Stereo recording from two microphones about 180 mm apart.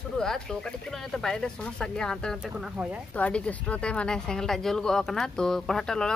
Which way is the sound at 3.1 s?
5° left (ahead or behind).